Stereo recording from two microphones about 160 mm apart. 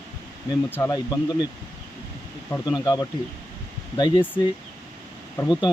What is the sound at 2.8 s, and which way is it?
Speech, 25° left (ahead or behind).